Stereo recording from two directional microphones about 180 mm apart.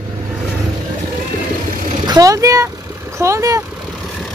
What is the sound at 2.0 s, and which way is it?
Speech, 20° right (ahead or behind).